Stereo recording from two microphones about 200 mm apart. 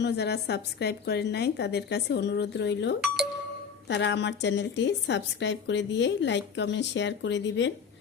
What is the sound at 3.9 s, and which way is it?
A woman's voice, 60° left (ahead or behind).